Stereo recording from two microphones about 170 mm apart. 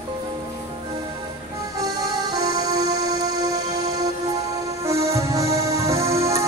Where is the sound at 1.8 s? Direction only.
20° right (ahead or behind).